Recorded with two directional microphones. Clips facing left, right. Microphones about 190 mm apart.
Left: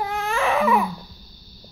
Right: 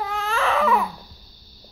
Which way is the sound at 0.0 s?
15° left (ahead or behind).